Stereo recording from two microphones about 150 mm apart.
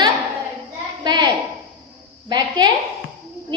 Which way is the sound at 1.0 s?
30° right (ahead or behind).